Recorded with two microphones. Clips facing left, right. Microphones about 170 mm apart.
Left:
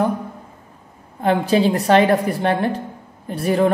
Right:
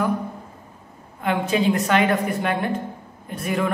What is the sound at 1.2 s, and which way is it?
A woman's voice, 35° left (ahead or behind).